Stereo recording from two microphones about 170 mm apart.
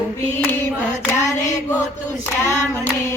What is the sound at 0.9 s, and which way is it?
Child singing, 45° left (ahead or behind).